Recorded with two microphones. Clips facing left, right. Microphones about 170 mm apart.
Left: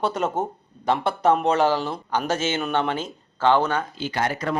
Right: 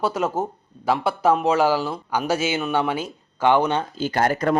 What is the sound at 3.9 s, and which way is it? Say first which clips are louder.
Speech: right 4 dB; 45° right (ahead or behind).